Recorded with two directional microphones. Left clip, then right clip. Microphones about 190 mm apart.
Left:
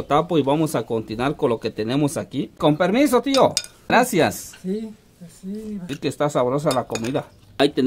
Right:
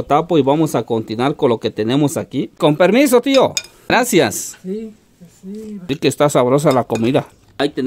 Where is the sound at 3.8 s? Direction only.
50° right (ahead or behind).